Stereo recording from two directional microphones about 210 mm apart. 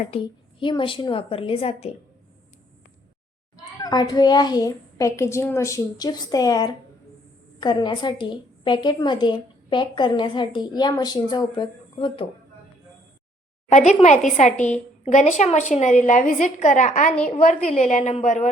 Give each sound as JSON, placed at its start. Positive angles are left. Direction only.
{"t": 0.1, "sound": "a woman's voice", "side_deg": 25}
{"t": 3.8, "sound": "a child's voice", "side_deg": 20}
{"t": 13.7, "sound": "a woman's voice", "side_deg": 35}